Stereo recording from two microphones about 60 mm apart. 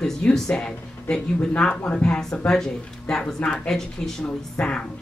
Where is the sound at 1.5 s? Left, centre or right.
Left.